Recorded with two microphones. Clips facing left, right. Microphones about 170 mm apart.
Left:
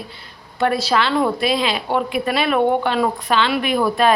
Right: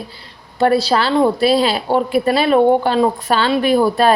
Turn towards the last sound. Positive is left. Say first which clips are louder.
# right 4 dB
turn(degrees=-35)  # may be behind; listen again after turning